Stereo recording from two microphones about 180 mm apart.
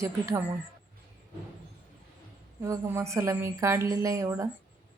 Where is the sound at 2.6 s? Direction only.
15° right (ahead or behind).